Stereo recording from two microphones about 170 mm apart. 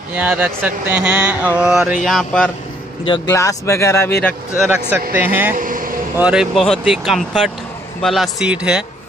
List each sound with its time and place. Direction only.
0.1 s speech: 10° right (ahead or behind)
3.1 s speech: 20° left (ahead or behind)
5.1 s speech: 10° right (ahead or behind)
5.5 s vehicle: 55° right (ahead or behind)
6.1 s speech: 5° right (ahead or behind)